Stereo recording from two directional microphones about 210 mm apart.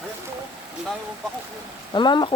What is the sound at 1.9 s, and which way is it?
Speech, 20° left (ahead or behind).